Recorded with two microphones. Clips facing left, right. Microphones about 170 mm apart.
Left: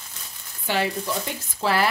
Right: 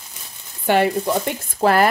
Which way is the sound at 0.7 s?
55° right (ahead or behind).